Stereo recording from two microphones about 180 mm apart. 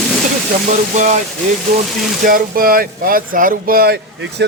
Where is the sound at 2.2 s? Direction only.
50° right (ahead or behind); by 4.4 s 65° right (ahead or behind).